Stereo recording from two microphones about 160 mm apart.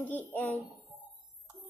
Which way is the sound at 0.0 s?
10° left (ahead or behind).